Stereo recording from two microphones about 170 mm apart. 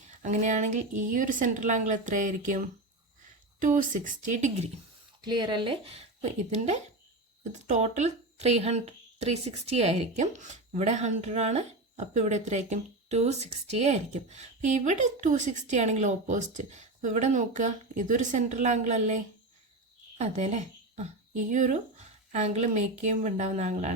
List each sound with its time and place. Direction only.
0.0 s a woman's voice: 45° right (ahead or behind)
3.6 s a woman's voice: 50° right (ahead or behind)
5.2 s a woman's voice: 25° right (ahead or behind); by 23.9 s 45° right (ahead or behind)